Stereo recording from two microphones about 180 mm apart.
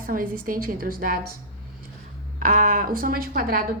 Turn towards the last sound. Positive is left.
turn(degrees=-55)  # may be behind; listen again after turning